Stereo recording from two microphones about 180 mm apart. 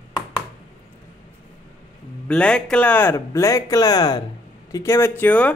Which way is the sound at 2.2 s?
5° left (ahead or behind).